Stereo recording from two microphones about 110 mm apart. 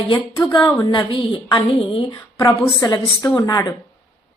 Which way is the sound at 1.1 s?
50° left (ahead or behind).